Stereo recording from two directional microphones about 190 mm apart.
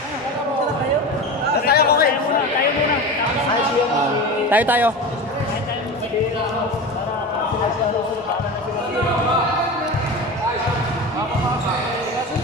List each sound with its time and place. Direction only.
1.7 s chatter: 55° left (ahead or behind)
4.5 s speech: 10° right (ahead or behind)